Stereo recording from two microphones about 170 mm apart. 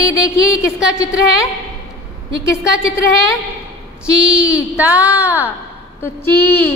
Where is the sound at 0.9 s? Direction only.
20° left (ahead or behind).